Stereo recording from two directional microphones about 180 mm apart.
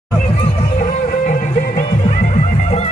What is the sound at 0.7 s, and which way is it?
Music, 45° left (ahead or behind).